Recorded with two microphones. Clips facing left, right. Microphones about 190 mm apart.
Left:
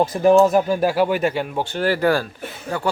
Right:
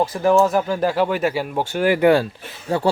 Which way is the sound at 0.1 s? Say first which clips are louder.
Left 3 dB; 20° left (ahead or behind).